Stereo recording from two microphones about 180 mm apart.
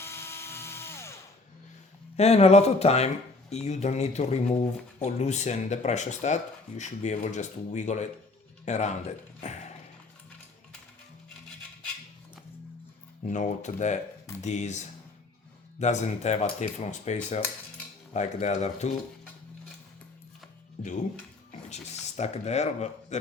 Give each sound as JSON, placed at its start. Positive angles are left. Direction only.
{"t": 0.0, "sound": "drill", "side_deg": 15}
{"t": 2.1, "sound": "speech", "side_deg": 35}
{"t": 13.2, "sound": "speech", "side_deg": 45}
{"t": 20.8, "sound": "speech", "side_deg": 45}